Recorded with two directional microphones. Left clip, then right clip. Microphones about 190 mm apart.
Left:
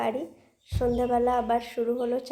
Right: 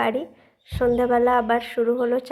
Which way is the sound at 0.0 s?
15° right (ahead or behind).